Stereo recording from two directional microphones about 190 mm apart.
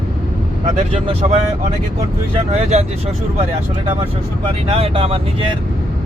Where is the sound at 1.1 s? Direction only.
30° right (ahead or behind).